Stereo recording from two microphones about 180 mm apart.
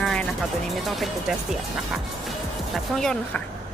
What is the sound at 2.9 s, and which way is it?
Speech, 5° left (ahead or behind).